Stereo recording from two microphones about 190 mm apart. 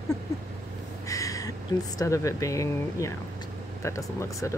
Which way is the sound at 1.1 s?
15° left (ahead or behind).